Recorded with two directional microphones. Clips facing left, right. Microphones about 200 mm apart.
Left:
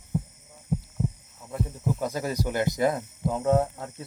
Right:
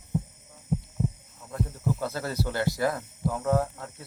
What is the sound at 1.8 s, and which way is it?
Heart sounds, 15° left (ahead or behind).